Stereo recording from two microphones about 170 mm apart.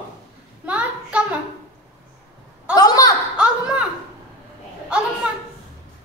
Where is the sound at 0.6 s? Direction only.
5° right (ahead or behind).